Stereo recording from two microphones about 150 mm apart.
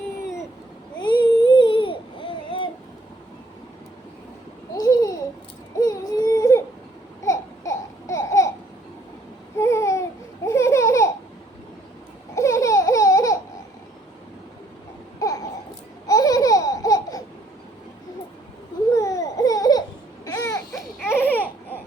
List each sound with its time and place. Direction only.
1.0 s babbling: 30° left (ahead or behind)
4.7 s babbling: 25° left (ahead or behind)
5.8 s baby cry: 25° left (ahead or behind)
7.3 s babbling: 20° left (ahead or behind)
9.6 s babbling: 20° left (ahead or behind)
12.3 s laughter: 20° left (ahead or behind)
15.2 s a sound: 20° left (ahead or behind)
16.0 s laughter: 25° left (ahead or behind)
18.9 s a sound: 20° left (ahead or behind)